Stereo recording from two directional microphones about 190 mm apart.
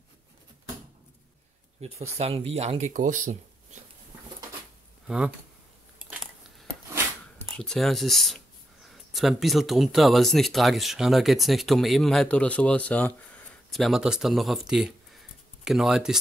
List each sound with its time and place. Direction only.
1.8 s speech: 35° right (ahead or behind)
5.0 s speech: 5° right (ahead or behind)
7.4 s speech: 5° left (ahead or behind)